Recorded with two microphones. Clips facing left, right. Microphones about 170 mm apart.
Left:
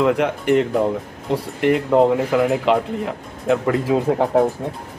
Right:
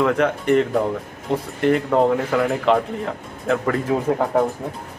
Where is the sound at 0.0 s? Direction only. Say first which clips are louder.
Left 1 dB; centre (ahead or behind).